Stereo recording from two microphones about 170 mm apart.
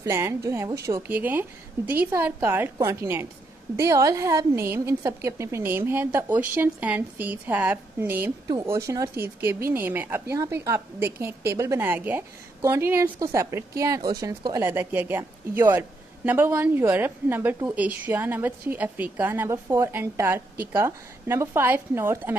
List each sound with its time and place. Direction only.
0.0 s a woman's voice: 15° right (ahead or behind)